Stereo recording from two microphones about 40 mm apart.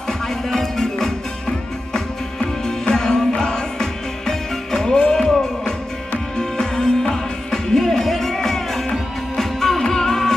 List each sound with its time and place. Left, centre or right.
0.5 s music: centre
2.9 s music: centre
6.3 s music: centre